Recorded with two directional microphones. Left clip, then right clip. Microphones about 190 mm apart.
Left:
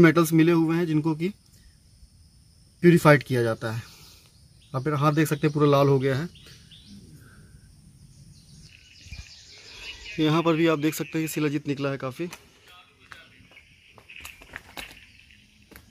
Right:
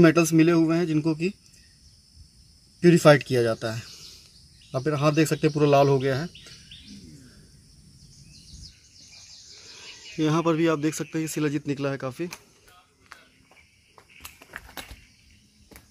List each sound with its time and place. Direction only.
0.0 s speech: 35° left (ahead or behind)
2.9 s speech: 35° left (ahead or behind)
9.7 s speech: centre (ahead or behind)
14.2 s a sound: 5° right (ahead or behind)